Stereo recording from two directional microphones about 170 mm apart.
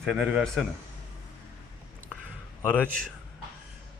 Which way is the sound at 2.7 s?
10° left (ahead or behind).